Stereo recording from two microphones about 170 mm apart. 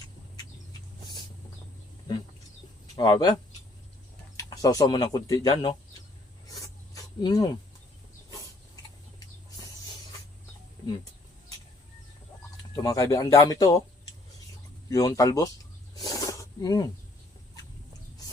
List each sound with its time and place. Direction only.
2.9 s speech: 25° left (ahead or behind)
4.4 s speech: 20° left (ahead or behind)
6.9 s cricket: 20° left (ahead or behind)
12.7 s speech: 20° left (ahead or behind)
14.8 s speech: 20° left (ahead or behind)
16.0 s snake: 20° left (ahead or behind)